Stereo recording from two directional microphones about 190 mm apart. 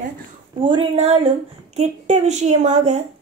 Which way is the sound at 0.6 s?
30° right (ahead or behind).